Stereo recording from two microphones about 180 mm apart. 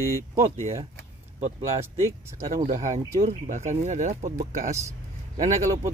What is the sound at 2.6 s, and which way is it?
Speech, 40° right (ahead or behind).